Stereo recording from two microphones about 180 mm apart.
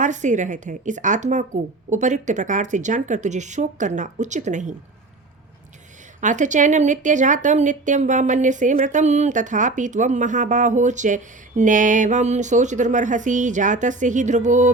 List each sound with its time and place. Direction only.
0.0 s a woman's voice: 40° right (ahead or behind)
6.1 s a woman's voice: 45° right (ahead or behind)